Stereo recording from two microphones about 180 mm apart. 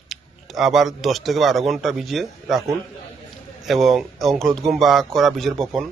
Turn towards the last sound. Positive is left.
turn(degrees=0)  # may be behind; listen again after turning